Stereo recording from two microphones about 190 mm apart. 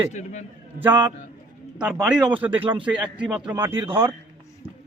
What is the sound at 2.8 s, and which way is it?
A man's voice, 5° right (ahead or behind).